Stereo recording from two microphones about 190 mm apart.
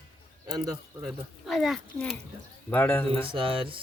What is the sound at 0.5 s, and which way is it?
Speech, 20° right (ahead or behind).